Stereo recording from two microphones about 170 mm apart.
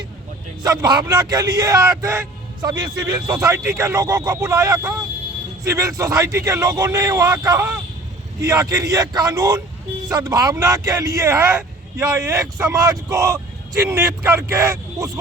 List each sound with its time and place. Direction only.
0.6 s a man's voice: 20° right (ahead or behind)